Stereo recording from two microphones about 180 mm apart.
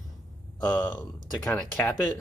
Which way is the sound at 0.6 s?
10° left (ahead or behind).